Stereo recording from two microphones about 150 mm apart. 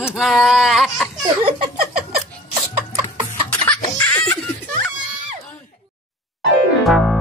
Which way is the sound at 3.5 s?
10° left (ahead or behind).